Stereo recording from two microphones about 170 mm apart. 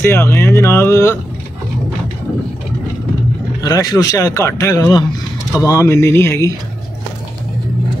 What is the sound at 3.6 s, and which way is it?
Speech, 25° left (ahead or behind).